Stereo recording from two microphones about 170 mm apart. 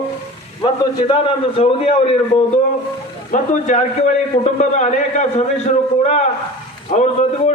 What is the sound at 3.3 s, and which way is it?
A man's voice, 45° left (ahead or behind).